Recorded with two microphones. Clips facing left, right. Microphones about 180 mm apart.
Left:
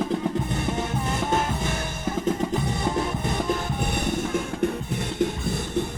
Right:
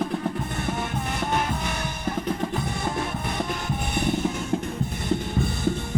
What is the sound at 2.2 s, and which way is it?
Music, 20° left (ahead or behind).